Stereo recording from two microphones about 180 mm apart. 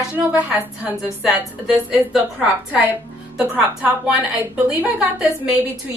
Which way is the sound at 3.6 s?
5° right (ahead or behind).